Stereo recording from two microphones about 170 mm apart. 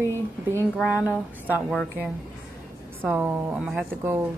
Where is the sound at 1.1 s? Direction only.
10° right (ahead or behind).